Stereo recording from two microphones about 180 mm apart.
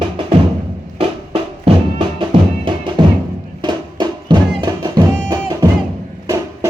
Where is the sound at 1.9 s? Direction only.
30° right (ahead or behind).